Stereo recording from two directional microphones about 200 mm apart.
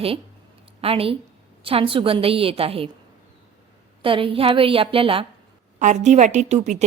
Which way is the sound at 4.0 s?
25° right (ahead or behind).